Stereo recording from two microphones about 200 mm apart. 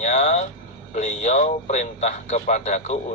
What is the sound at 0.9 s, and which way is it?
Speech, 35° left (ahead or behind).